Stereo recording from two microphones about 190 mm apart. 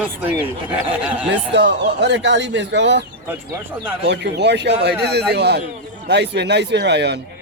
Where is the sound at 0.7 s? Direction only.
5° right (ahead or behind).